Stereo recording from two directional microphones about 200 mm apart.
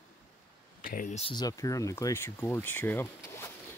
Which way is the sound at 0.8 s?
40° left (ahead or behind).